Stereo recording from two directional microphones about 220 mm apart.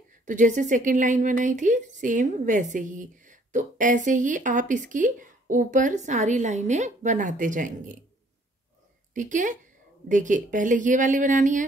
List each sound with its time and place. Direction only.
0.2 s speech: 35° right (ahead or behind)
9.1 s speech: 35° right (ahead or behind)